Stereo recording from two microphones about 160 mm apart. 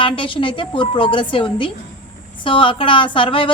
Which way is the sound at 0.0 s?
30° left (ahead or behind).